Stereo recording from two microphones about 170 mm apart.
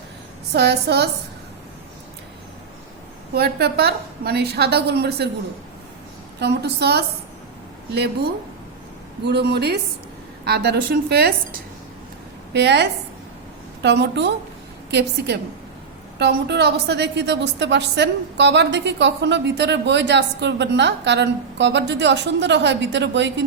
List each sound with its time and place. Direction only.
0.5 s a woman's voice: 75° right (ahead or behind)
3.3 s a woman's voice: 70° right (ahead or behind)
6.4 s a woman's voice: 80° right
12.5 s a woman's voice: 85° right